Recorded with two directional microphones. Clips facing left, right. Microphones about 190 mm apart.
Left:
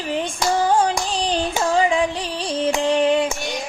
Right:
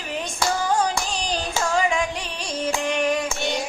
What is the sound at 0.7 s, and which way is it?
Music, 30° left (ahead or behind).